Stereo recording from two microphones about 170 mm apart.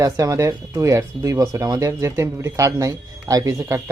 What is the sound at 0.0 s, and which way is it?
Speech, 20° right (ahead or behind).